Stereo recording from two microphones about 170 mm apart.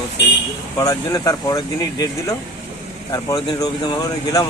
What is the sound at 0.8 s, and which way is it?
Speech, 20° left (ahead or behind).